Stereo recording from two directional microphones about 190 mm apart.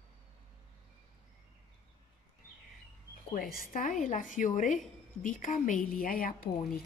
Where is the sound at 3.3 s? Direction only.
50° left (ahead or behind).